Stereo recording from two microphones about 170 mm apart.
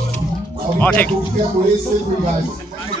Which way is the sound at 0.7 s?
10° left (ahead or behind).